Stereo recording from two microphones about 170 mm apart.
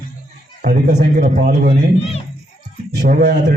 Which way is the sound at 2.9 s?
60° right (ahead or behind).